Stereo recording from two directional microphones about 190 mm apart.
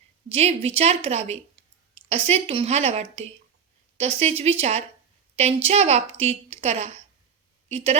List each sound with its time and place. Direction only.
0.3 s a woman's voice: 30° right (ahead or behind)